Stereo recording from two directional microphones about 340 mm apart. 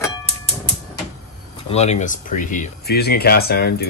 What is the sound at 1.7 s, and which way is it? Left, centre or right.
Speech, centre.